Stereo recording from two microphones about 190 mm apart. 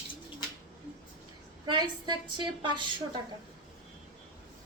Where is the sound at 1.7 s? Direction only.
25° right (ahead or behind).